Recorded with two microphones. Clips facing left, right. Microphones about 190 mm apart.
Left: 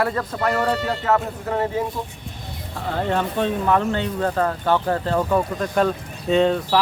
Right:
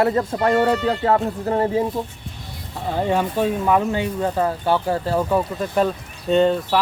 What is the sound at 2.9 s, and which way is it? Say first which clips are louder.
Speech: right 2 dB; 10° right (ahead or behind).